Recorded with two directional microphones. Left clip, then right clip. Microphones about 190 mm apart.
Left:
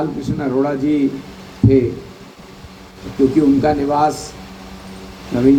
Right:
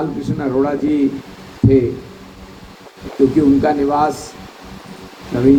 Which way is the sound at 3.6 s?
55° left (ahead or behind).